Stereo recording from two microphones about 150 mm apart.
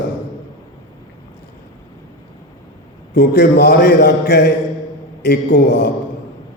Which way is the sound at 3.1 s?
85° left.